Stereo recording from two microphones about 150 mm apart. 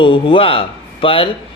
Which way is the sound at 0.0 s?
35° left (ahead or behind).